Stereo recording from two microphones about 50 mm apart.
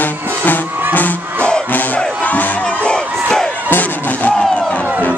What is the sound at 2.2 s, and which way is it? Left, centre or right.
Music, left.